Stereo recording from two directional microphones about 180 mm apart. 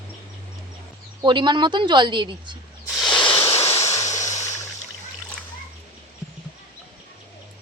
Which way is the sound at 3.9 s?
15° left (ahead or behind).